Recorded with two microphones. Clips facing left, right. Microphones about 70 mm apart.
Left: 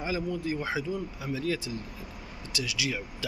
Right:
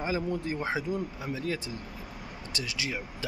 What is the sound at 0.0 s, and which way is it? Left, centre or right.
Speech, right.